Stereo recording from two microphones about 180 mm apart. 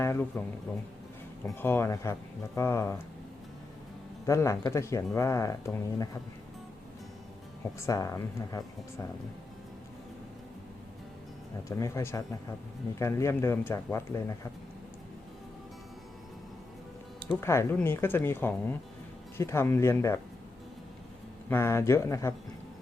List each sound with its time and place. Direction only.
0.0 s speech: 15° left (ahead or behind)
1.5 s speech: 15° left (ahead or behind)
4.3 s speech: 15° left (ahead or behind)
7.8 s speech: 20° left (ahead or behind)
11.8 s speech: 15° left (ahead or behind)
17.2 s speech: 15° left (ahead or behind)
21.5 s speech: 15° left (ahead or behind)